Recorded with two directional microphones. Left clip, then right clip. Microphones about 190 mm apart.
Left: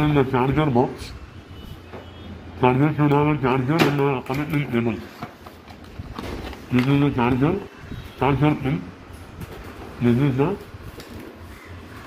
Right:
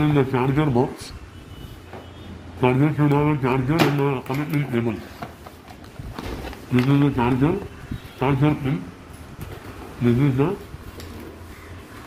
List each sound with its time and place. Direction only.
0.0 s speech: 20° right (ahead or behind)
2.6 s speech: 20° right (ahead or behind)
6.7 s speech: 25° right (ahead or behind)
10.0 s speech: 25° right (ahead or behind)